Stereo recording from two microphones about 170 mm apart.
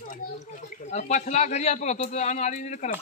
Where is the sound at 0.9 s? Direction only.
45° left (ahead or behind).